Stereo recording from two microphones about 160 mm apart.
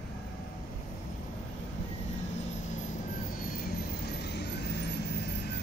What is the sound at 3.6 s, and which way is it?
Vehicle, 90° left.